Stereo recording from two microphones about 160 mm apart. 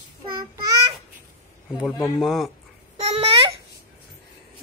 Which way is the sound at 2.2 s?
Centre (ahead or behind).